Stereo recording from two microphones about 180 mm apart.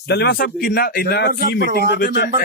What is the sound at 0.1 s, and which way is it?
Speech, 65° left (ahead or behind).